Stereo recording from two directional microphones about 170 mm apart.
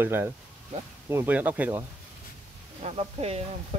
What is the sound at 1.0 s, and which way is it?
Speech, 10° right (ahead or behind).